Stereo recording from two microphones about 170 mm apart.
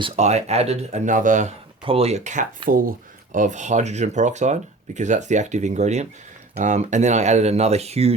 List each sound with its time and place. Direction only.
0.2 s speech: 40° right (ahead or behind)
1.8 s speech: 35° right (ahead or behind)